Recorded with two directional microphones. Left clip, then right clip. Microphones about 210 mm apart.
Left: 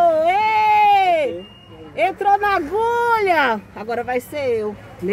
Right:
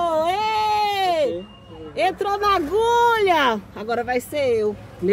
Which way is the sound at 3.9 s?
5° right (ahead or behind).